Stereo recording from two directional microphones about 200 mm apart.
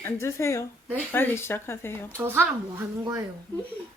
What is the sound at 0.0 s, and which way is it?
Speech, 15° left (ahead or behind).